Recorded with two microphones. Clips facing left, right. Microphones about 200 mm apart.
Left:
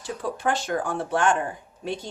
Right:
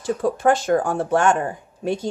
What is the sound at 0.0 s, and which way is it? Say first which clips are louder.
Speech: right 8 dB; 45° right (ahead or behind).